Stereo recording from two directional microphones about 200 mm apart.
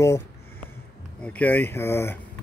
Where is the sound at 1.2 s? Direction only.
10° left (ahead or behind).